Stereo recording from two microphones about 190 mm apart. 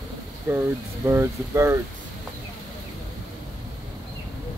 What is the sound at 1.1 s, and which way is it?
Speech, 15° right (ahead or behind).